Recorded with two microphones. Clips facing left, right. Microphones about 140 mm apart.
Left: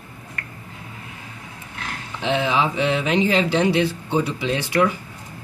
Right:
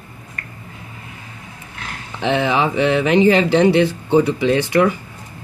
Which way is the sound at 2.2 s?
60° right (ahead or behind).